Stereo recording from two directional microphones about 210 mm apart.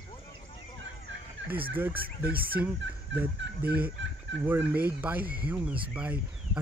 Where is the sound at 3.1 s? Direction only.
60° right (ahead or behind).